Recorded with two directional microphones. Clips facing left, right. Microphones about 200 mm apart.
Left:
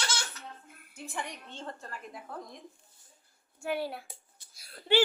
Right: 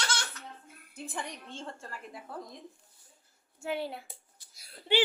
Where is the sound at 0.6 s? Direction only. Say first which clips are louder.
Right 2 dB; 30° right (ahead or behind).